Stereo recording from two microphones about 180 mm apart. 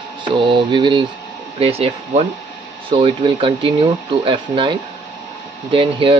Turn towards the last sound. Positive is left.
turn(degrees=-30)  # may be behind; listen again after turning